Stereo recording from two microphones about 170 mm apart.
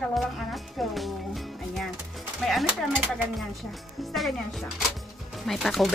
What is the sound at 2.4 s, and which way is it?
A woman's voice, centre (ahead or behind).